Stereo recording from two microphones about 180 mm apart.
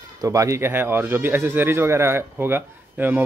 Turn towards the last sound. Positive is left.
turn(degrees=-10)  # may be behind; listen again after turning